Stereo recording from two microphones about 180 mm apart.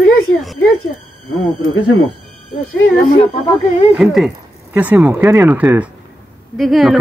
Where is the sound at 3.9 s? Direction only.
Centre (ahead or behind).